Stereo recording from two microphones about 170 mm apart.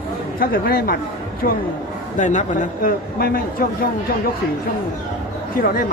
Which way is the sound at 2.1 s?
45° left (ahead or behind).